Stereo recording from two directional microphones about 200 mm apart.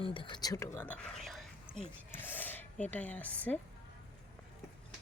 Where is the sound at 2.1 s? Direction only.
10° left (ahead or behind).